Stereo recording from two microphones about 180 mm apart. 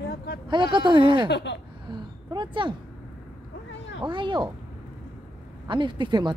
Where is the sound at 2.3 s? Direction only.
25° right (ahead or behind).